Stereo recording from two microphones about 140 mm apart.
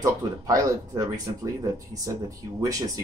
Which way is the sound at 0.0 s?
25° right (ahead or behind).